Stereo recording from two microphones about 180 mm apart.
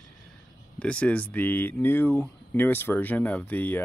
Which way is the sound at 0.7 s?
5° left (ahead or behind).